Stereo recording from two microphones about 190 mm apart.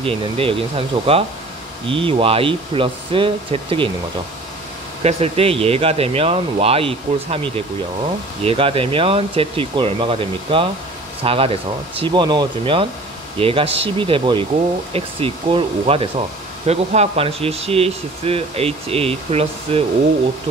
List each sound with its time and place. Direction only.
0.0 s speech: 30° right (ahead or behind)
5.0 s speech: 30° right (ahead or behind)